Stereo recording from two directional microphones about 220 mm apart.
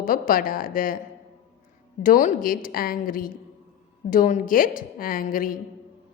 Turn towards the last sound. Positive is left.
turn(degrees=40)  # may be behind; listen again after turning